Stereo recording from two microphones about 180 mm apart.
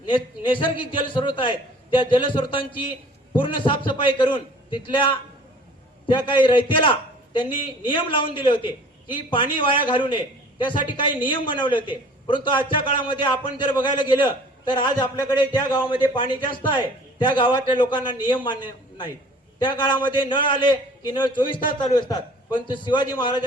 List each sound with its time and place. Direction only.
0.1 s a man's voice: 25° left (ahead or behind)